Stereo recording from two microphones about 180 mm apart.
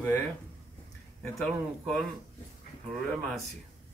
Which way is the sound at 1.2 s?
5° left (ahead or behind).